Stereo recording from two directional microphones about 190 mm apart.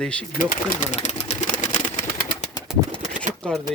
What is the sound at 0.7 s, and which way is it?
Sewing machine, 35° left (ahead or behind).